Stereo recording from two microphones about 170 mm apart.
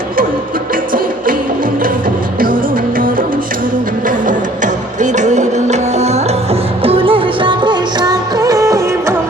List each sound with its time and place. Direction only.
4.3 s music: 50° right (ahead or behind); by 9.1 s 20° right (ahead or behind)